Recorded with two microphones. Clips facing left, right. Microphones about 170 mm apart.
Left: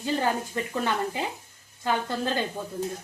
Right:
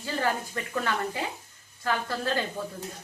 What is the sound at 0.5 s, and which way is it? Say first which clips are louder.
A woman's voice: left 2 dB; 20° left (ahead or behind).